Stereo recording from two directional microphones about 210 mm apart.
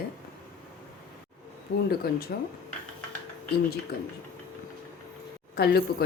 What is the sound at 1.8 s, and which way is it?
Speech, 45° left (ahead or behind).